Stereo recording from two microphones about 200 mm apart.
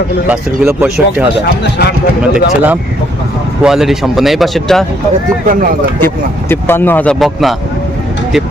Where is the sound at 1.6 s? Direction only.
55° left (ahead or behind).